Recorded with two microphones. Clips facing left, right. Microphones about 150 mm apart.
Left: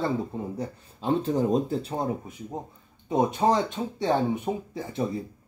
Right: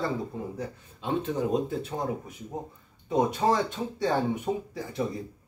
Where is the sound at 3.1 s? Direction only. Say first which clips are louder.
Left 2 dB; 20° left (ahead or behind).